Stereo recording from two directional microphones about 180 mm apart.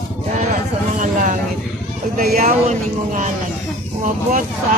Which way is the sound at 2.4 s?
45° right (ahead or behind).